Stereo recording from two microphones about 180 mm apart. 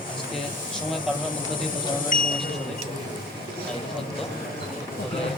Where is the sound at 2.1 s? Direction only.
50° left (ahead or behind).